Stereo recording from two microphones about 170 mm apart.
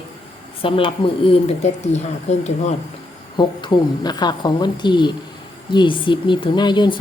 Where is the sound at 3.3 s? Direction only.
25° left (ahead or behind).